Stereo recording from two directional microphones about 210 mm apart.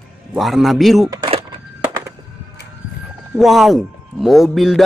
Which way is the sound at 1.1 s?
25° right (ahead or behind).